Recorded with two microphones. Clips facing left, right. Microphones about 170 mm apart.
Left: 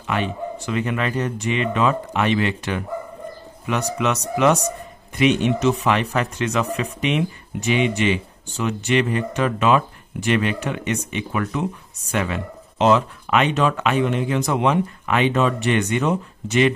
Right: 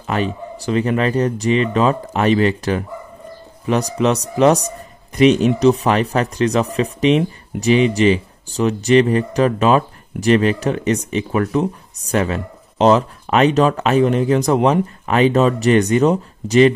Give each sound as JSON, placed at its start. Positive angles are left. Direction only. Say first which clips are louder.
{"t": 0.0, "sound": "speech", "louder": "right 3 dB", "side_deg": -35}